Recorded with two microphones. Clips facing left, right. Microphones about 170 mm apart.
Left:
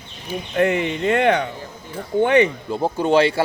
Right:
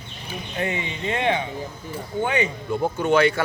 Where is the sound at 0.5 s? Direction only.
70° left (ahead or behind).